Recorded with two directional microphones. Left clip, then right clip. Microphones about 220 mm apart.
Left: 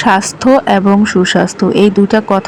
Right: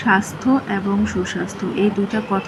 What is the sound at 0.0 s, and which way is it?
Speech, 35° left (ahead or behind).